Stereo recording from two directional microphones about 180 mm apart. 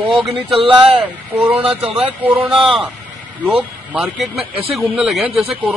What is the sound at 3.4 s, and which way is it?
A man's voice, 5° right (ahead or behind).